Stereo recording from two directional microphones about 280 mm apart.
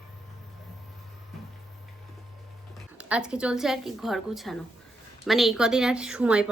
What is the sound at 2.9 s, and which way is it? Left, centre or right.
A woman's voice, centre.